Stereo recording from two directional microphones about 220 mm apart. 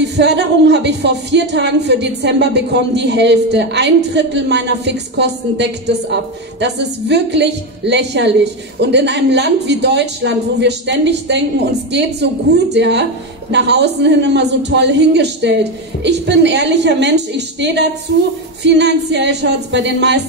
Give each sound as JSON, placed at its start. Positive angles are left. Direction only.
{"t": 0.2, "sound": "speech", "side_deg": -50}